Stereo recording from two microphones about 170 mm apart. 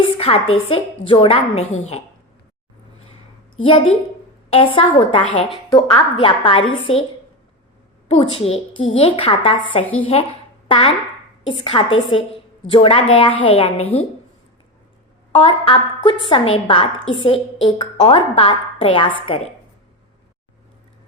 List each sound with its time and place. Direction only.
0.0 s a woman's voice: 35° left (ahead or behind)
3.6 s a woman's voice: 30° left (ahead or behind)
8.0 s a woman's voice: 35° left (ahead or behind)
15.3 s a woman's voice: 30° left (ahead or behind)